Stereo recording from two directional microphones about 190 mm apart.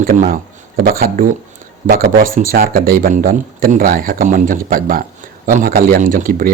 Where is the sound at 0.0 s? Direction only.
50° right (ahead or behind).